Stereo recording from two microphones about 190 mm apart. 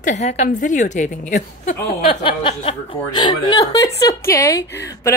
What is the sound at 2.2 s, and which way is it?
A woman's voice, 30° left (ahead or behind).